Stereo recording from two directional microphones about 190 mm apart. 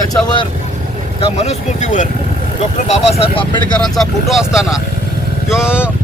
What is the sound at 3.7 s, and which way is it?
Speech, centre (ahead or behind).